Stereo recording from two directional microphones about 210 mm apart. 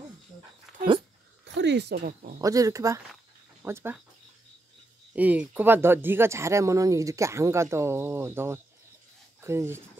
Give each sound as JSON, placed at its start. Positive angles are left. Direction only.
{"t": 0.7, "sound": "dog", "side_deg": 0}
{"t": 1.4, "sound": "speech", "side_deg": -55}
{"t": 2.4, "sound": "speech", "side_deg": -15}
{"t": 5.1, "sound": "speech", "side_deg": -5}